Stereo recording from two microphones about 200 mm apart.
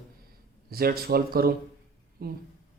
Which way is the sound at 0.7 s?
50° right (ahead or behind).